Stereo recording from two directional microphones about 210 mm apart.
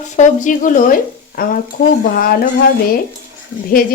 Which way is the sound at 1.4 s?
45° left (ahead or behind).